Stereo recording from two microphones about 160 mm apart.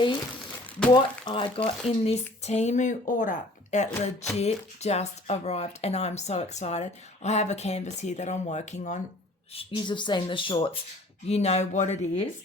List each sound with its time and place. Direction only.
0.9 s speech: 30° left (ahead or behind); by 9.0 s 50° left (ahead or behind)
9.6 s speech: 30° left (ahead or behind); by 12.2 s 45° left (ahead or behind)